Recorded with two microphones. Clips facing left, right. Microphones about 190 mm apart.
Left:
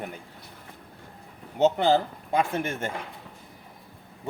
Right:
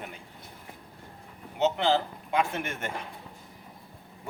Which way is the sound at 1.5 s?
45° left (ahead or behind).